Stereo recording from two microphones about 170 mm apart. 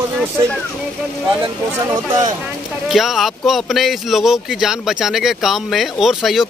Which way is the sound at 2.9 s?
Centre (ahead or behind).